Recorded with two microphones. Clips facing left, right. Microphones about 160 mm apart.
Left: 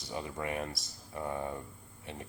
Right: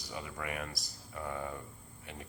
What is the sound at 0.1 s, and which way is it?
Speech, 25° left (ahead or behind).